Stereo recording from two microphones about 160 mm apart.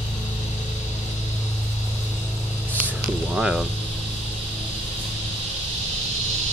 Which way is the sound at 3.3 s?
5° right (ahead or behind).